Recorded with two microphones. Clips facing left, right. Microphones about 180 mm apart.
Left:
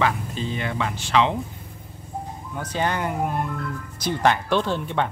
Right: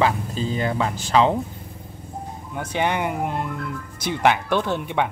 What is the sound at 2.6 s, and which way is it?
Speech, 20° right (ahead or behind).